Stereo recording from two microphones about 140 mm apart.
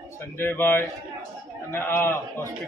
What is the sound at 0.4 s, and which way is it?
A man's voice, 15° left (ahead or behind).